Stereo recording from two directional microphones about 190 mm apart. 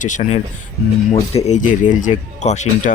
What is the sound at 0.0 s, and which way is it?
Speech, 40° left (ahead or behind).